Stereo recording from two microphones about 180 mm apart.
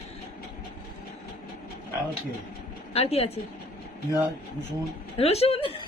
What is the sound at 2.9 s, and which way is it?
Speech, 35° left (ahead or behind).